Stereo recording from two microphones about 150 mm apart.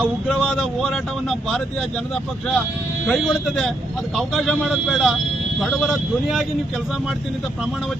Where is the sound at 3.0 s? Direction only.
Centre (ahead or behind).